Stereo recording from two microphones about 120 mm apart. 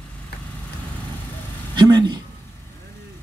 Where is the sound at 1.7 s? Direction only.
35° right (ahead or behind).